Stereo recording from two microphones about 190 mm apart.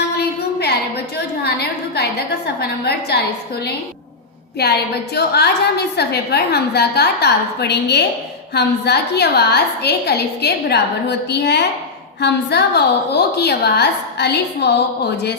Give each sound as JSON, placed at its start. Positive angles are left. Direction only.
{"t": 1.5, "sound": "a woman's voice", "side_deg": 60}